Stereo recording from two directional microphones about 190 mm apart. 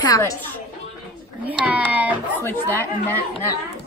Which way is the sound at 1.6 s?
10° right (ahead or behind).